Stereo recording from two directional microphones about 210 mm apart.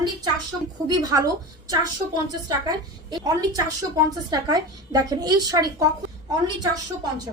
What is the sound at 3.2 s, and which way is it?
A woman's voice, 15° right (ahead or behind).